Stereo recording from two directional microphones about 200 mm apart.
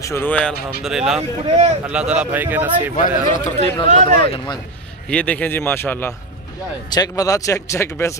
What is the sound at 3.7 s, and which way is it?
Speech, 25° left (ahead or behind).